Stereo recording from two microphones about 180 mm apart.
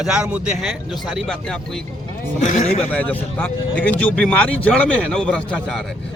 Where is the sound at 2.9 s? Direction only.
5° left (ahead or behind).